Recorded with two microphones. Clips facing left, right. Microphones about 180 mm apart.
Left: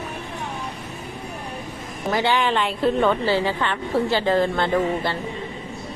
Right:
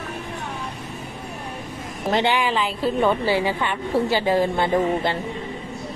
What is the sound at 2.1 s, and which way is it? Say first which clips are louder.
Speech: right 1 dB; 25° right (ahead or behind).